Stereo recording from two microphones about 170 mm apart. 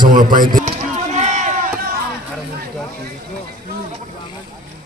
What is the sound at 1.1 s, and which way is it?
Run, 45° right (ahead or behind).